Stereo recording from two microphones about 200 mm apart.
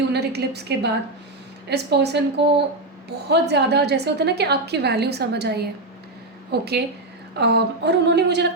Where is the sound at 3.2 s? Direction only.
55° right (ahead or behind).